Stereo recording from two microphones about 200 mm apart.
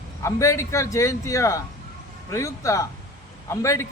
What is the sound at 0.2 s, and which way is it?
Speech, 15° left (ahead or behind).